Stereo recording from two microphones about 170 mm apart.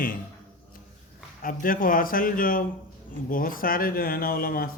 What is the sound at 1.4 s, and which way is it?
Speech, 55° left (ahead or behind).